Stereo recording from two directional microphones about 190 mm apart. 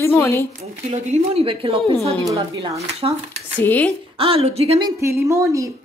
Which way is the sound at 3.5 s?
10° left (ahead or behind).